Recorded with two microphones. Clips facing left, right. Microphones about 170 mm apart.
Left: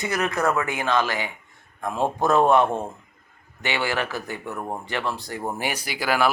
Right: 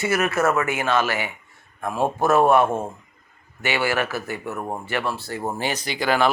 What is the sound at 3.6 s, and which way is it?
Speech, 15° left (ahead or behind).